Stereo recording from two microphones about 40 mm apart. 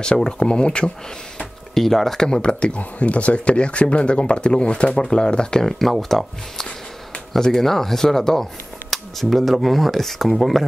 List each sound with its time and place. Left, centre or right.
0.0 s speech: left
1.8 s speech: centre
5.7 s speech: centre